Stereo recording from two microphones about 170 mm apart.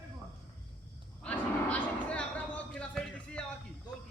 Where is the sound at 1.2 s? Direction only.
10° left (ahead or behind).